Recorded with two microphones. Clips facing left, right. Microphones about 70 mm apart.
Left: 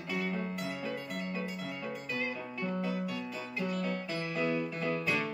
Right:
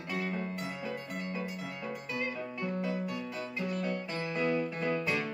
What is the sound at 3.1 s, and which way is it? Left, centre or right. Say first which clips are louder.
Music: right 1 dB; right.